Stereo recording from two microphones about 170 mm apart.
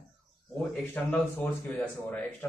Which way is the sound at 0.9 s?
10° left (ahead or behind).